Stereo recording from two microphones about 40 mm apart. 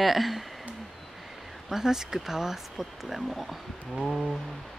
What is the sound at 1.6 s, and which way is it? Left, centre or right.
Speech, centre.